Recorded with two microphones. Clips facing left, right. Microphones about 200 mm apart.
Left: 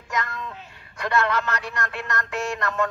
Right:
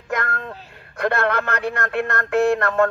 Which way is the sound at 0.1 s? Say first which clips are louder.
Right 4 dB; 55° right (ahead or behind).